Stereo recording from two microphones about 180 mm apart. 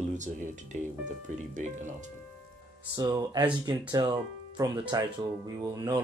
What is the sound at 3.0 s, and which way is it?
Speech, 20° right (ahead or behind).